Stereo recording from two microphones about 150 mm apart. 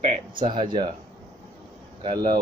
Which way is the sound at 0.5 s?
30° right (ahead or behind).